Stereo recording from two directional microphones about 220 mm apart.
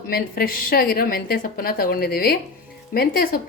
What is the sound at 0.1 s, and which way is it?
A woman's voice, 45° left (ahead or behind).